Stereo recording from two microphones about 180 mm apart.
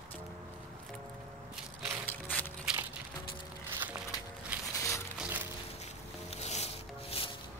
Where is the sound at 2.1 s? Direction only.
10° left (ahead or behind).